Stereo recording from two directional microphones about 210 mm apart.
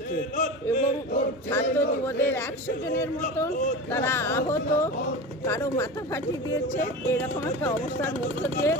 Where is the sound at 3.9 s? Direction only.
10° left (ahead or behind).